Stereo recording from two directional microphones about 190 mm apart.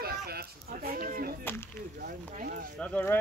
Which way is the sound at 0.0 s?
55° right (ahead or behind).